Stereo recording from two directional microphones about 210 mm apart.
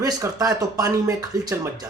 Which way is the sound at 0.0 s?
15° right (ahead or behind).